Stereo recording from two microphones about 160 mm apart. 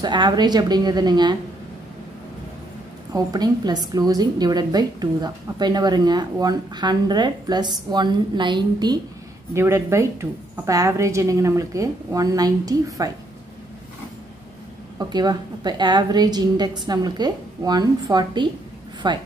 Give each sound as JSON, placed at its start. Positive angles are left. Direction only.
{"t": 0.0, "sound": "a woman's voice", "side_deg": -25}
{"t": 3.1, "sound": "a woman's voice", "side_deg": -25}
{"t": 15.0, "sound": "a woman's voice", "side_deg": -25}